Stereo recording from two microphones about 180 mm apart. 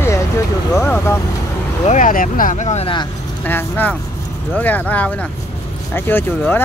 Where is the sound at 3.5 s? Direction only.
10° left (ahead or behind).